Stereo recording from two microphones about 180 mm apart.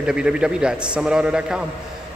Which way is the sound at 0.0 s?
5° right (ahead or behind).